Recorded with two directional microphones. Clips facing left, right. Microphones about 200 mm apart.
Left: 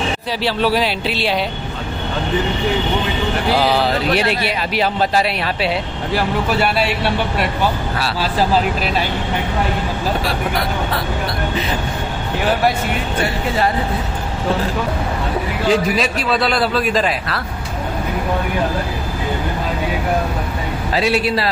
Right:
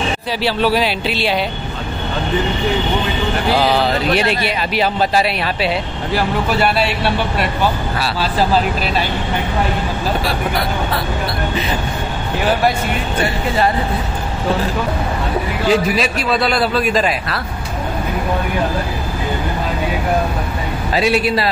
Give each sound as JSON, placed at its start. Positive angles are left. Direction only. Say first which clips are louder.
{"t": 0.4, "sound": "speech", "louder": "right 1 dB", "side_deg": -5}
{"t": 3.5, "sound": "speech", "louder": "right 1 dB", "side_deg": 5}
{"t": 6.6, "sound": "speech", "louder": "right 1 dB", "side_deg": 10}
{"t": 15.7, "sound": "a man's voice", "louder": "right 1 dB", "side_deg": -10}
{"t": 20.9, "sound": "a man's voice", "louder": "right 2 dB", "side_deg": -15}